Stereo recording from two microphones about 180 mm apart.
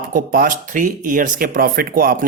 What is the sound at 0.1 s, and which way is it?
Speech, 50° right (ahead or behind).